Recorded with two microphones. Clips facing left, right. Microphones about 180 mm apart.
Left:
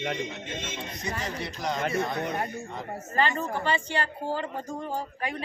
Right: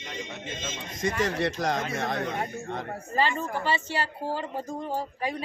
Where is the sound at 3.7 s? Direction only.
5° right (ahead or behind).